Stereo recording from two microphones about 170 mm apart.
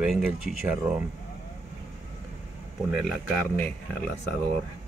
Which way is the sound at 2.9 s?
Centre (ahead or behind).